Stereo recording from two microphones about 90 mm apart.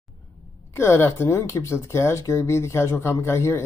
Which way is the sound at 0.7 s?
30° left (ahead or behind).